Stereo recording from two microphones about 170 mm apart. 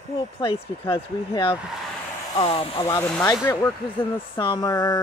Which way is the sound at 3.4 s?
15° left (ahead or behind).